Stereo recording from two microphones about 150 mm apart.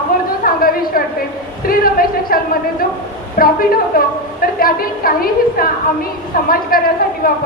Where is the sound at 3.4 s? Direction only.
70° left (ahead or behind).